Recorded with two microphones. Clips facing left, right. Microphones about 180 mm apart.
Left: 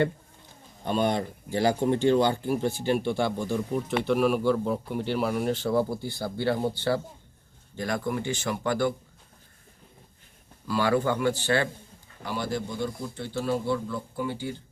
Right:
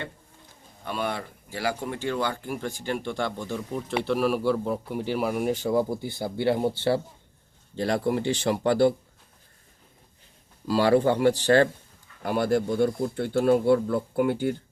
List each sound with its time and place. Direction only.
0.9 s speech: 25° left (ahead or behind)
2.2 s speech: 15° left (ahead or behind); by 8.9 s 35° right (ahead or behind)
10.7 s speech: 35° right (ahead or behind)
12.2 s speech: 55° right (ahead or behind)